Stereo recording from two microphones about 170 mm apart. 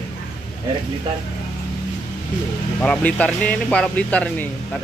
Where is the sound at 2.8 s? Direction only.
5° left (ahead or behind).